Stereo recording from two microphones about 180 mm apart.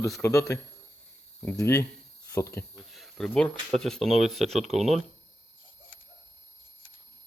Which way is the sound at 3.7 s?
Centre (ahead or behind).